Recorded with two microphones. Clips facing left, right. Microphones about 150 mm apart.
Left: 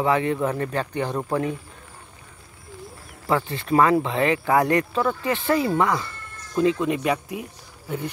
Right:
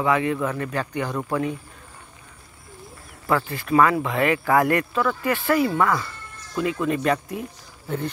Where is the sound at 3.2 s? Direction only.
25° left (ahead or behind).